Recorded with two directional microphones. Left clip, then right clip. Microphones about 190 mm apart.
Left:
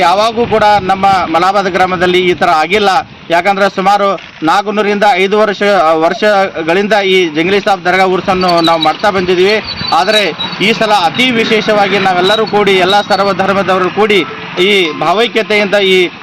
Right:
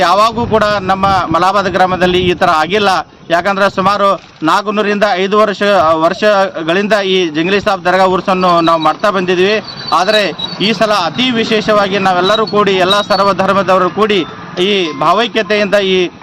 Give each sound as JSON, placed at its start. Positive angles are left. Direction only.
{"t": 0.0, "sound": "a man's voice", "side_deg": -30}